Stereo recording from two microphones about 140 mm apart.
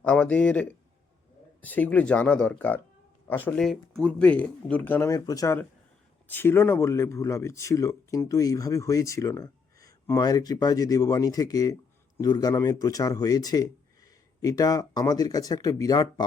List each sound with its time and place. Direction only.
0.0 s speech: 10° left (ahead or behind)
3.6 s speech: centre (ahead or behind); by 5.5 s 25° left (ahead or behind)
6.2 s speech: 15° left (ahead or behind)